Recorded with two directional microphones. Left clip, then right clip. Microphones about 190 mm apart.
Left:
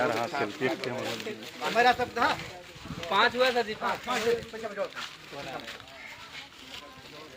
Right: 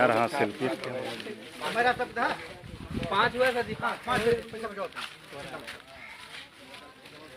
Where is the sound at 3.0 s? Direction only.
30° left (ahead or behind).